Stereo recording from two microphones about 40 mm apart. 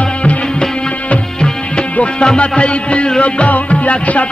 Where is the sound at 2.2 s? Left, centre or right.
Left.